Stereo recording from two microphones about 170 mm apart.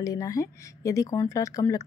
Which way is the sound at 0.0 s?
20° left (ahead or behind).